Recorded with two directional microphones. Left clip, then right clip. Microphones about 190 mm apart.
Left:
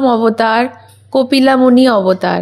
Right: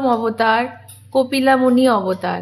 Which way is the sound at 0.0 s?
35° left (ahead or behind).